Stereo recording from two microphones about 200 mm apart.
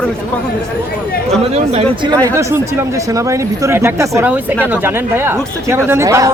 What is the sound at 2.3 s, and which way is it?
Speech, 15° right (ahead or behind).